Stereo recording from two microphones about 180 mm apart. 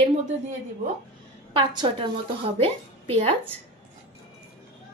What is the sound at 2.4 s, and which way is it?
Speech, 30° right (ahead or behind).